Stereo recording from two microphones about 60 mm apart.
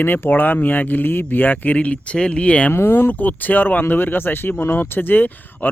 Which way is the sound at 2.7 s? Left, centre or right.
Left.